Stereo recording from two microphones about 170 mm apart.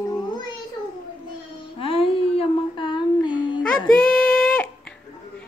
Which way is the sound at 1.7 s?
35° left (ahead or behind).